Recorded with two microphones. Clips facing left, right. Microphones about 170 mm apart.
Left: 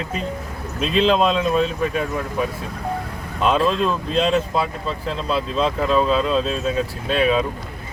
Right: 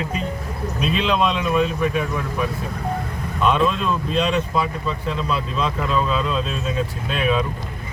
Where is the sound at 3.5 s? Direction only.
35° left (ahead or behind).